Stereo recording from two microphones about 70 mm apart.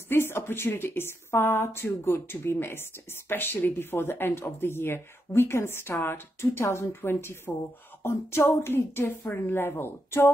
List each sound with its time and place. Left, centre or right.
0.1 s speech: left